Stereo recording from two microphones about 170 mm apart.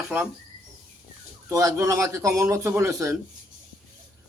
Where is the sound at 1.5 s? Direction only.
20° right (ahead or behind).